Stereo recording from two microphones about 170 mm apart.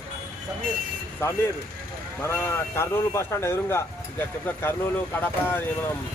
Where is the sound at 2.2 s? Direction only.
15° left (ahead or behind).